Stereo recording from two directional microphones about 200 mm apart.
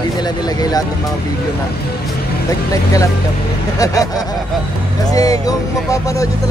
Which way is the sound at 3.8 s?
15° left (ahead or behind).